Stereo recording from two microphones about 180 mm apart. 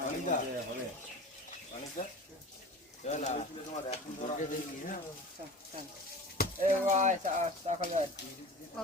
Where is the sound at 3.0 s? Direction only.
40° left (ahead or behind).